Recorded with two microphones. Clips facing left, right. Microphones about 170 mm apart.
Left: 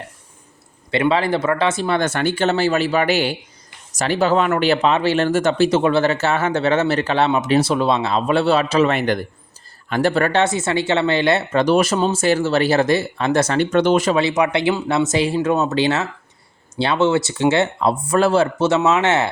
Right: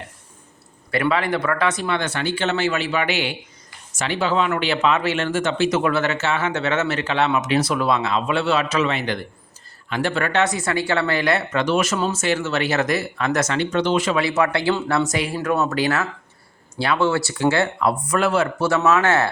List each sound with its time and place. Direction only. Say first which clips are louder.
0.9 s speech: left 3 dB; 25° left (ahead or behind)
2.0 s speech: left 5 dB; 45° left (ahead or behind)
8.9 s speech: left 5 dB; 50° left (ahead or behind)
10.4 s speech: left 3 dB; 25° left (ahead or behind)
13.6 s speech: left 6 dB; 50° left (ahead or behind)
14.2 s speech: left 3 dB; 20° left (ahead or behind)